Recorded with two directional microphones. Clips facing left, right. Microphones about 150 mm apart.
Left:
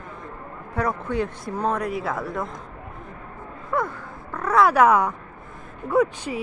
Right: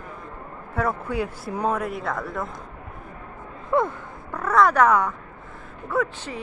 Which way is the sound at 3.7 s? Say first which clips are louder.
Right 4 dB; 20° right (ahead or behind).